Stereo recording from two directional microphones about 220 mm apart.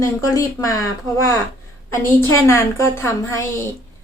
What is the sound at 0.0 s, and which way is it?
A woman's voice, 15° left (ahead or behind).